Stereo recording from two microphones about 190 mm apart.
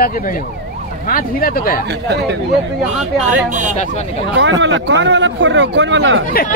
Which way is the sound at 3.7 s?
35° left (ahead or behind).